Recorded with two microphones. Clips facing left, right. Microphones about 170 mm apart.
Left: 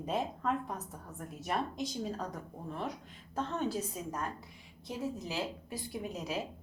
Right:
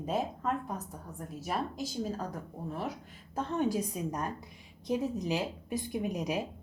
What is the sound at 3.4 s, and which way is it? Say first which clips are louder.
A woman's voice: right 4 dB; 15° right (ahead or behind).